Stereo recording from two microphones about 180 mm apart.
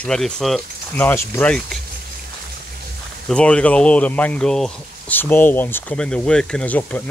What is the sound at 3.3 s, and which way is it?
Speech, 5° left (ahead or behind).